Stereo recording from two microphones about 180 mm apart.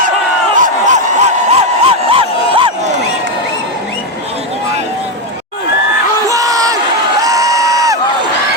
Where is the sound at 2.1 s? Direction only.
30° right (ahead or behind).